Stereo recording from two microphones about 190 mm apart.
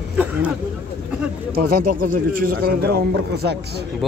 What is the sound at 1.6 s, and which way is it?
Speech, 50° right (ahead or behind).